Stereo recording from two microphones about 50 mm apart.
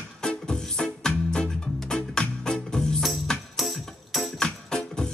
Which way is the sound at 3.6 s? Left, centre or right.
Centre.